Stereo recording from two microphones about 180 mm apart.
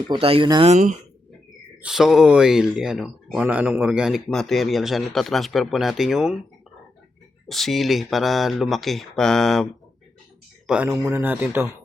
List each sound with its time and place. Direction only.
0.1 s speech: 30° right (ahead or behind)
0.7 s speech: 40° right (ahead or behind)
1.8 s speech: 5° right (ahead or behind)
7.4 s speech: centre (ahead or behind)
10.8 s speech: 15° right (ahead or behind)